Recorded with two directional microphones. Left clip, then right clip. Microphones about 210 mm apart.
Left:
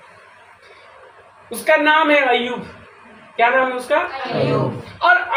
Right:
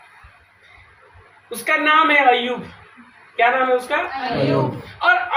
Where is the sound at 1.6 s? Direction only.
10° left (ahead or behind).